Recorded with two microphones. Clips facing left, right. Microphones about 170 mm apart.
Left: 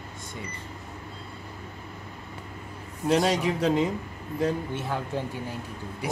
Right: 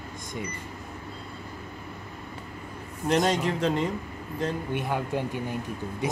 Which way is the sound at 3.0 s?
5° left (ahead or behind).